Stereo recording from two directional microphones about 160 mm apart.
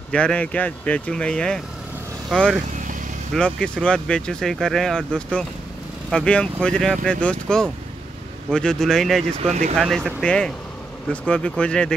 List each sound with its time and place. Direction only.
0.1 s speech: 5° left (ahead or behind)
9.4 s speech: 45° right (ahead or behind)
9.8 s speech: centre (ahead or behind)